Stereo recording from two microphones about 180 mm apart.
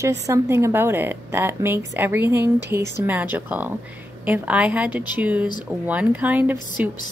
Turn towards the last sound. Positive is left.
turn(degrees=-10)  # may be behind; listen again after turning